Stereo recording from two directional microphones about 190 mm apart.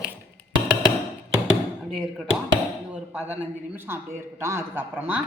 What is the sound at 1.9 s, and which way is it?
A man's voice, 5° right (ahead or behind).